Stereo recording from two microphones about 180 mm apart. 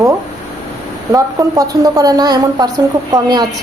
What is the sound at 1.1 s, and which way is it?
A woman's voice, 20° right (ahead or behind).